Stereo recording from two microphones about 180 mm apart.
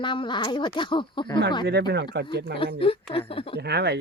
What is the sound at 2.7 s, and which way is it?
Speech, 30° left (ahead or behind).